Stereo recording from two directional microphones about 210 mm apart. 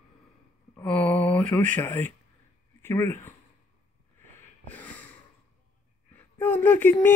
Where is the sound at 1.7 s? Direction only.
10° left (ahead or behind).